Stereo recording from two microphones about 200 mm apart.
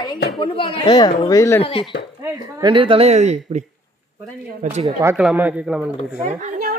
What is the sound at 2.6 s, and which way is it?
Speech, 25° right (ahead or behind).